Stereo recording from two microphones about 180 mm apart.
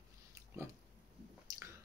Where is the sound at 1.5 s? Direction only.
20° right (ahead or behind).